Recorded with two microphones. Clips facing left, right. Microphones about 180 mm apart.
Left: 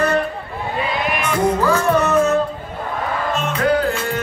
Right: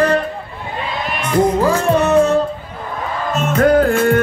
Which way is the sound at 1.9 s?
30° right (ahead or behind).